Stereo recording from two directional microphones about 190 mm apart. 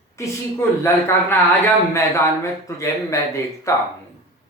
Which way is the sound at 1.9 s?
15° left (ahead or behind).